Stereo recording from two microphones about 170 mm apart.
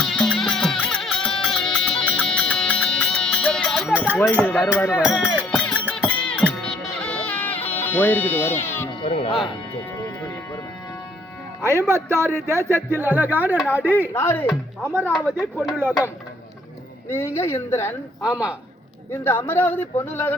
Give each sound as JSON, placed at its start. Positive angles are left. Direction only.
{"t": 0.0, "sound": "music", "side_deg": 5}
{"t": 3.9, "sound": "a sound", "side_deg": -10}
{"t": 4.2, "sound": "speech", "side_deg": 10}
{"t": 4.9, "sound": "music", "side_deg": -5}
{"t": 8.9, "sound": "speech", "side_deg": 35}
{"t": 11.6, "sound": "speech", "side_deg": -15}
{"t": 14.1, "sound": "speech", "side_deg": 15}
{"t": 14.5, "sound": "speech", "side_deg": -10}
{"t": 17.1, "sound": "speech", "side_deg": 15}
{"t": 18.2, "sound": "speech", "side_deg": -5}
{"t": 19.1, "sound": "speech", "side_deg": 15}